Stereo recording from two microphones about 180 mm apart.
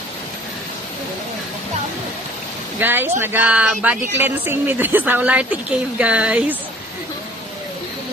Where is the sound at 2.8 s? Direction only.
10° right (ahead or behind).